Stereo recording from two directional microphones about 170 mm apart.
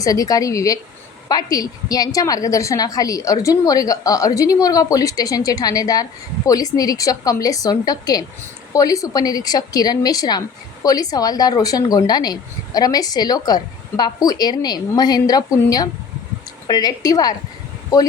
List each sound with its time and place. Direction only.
0.0 s speech: 20° left (ahead or behind)